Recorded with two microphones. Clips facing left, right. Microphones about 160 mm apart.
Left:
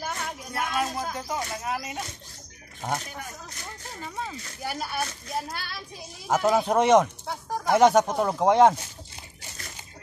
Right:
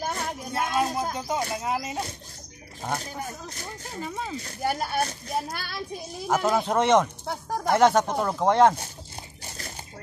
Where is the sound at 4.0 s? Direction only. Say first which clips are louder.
Right 3 dB; 10° right (ahead or behind).